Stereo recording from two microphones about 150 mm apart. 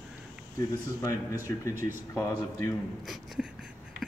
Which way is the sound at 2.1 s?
20° left (ahead or behind).